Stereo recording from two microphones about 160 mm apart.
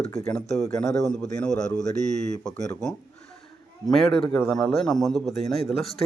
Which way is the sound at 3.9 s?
Centre (ahead or behind).